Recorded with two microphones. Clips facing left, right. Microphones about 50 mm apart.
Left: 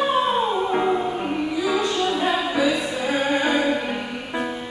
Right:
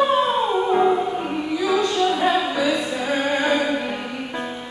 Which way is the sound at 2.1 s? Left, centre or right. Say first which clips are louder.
Right 2 dB; centre.